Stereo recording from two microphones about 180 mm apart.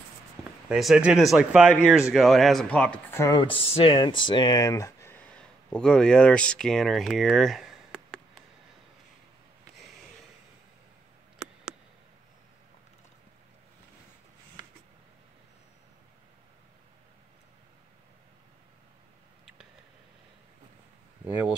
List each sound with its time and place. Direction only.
0.4 s speech: 5° right (ahead or behind); by 3.3 s 15° left (ahead or behind)
3.3 s speech: 30° left (ahead or behind)
5.7 s speech: 5° left (ahead or behind)
21.2 s a sound: 10° right (ahead or behind)